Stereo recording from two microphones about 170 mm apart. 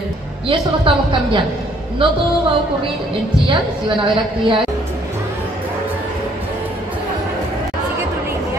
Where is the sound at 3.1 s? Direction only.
30° right (ahead or behind).